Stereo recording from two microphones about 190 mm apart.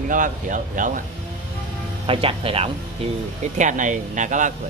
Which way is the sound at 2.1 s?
30° right (ahead or behind).